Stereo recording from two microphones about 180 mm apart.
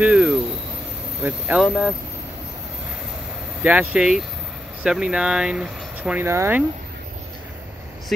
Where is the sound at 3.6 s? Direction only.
10° right (ahead or behind).